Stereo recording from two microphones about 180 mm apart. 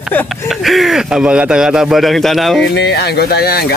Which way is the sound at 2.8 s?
65° left (ahead or behind).